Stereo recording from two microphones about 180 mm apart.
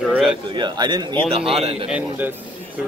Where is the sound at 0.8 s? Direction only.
25° right (ahead or behind).